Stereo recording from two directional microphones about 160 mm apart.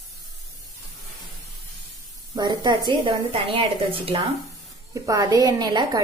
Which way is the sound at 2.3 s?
25° right (ahead or behind).